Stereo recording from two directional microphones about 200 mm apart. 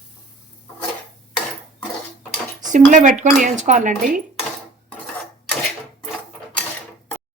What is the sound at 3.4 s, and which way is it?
Speech, 40° right (ahead or behind).